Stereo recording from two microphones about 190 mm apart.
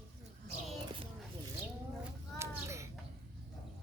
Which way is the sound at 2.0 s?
15° right (ahead or behind).